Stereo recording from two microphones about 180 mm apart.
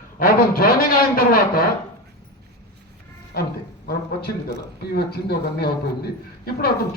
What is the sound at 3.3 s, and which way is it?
Speech, 60° left (ahead or behind).